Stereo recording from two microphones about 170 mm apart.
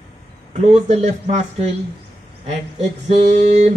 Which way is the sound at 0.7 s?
40° right (ahead or behind).